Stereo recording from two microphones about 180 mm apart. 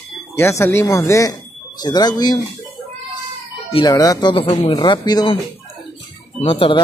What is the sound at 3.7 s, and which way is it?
Speech, 20° left (ahead or behind).